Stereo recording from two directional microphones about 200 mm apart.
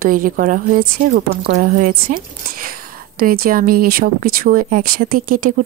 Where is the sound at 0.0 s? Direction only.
45° right (ahead or behind).